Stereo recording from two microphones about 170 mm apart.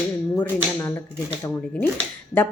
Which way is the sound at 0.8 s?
15° left (ahead or behind).